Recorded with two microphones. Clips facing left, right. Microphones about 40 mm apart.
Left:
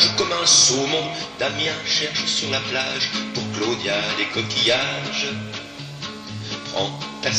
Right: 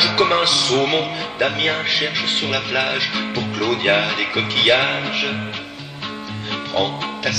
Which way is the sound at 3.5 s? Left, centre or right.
Centre.